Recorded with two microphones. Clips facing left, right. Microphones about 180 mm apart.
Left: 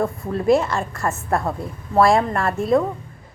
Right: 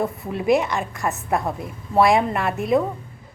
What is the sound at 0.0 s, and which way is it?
Speech, 5° right (ahead or behind).